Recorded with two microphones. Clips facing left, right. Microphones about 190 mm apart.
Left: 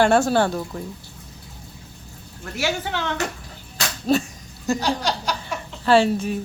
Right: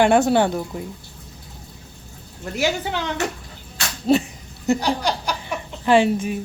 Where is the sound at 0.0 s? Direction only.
15° right (ahead or behind).